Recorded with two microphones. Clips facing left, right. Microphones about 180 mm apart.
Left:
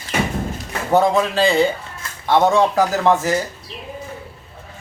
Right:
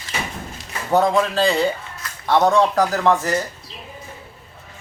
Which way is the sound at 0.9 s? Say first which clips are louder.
Left 1 dB; centre (ahead or behind).